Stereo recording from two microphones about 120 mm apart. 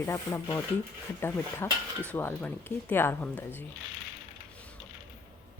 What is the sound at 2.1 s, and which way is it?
Speech, 15° left (ahead or behind).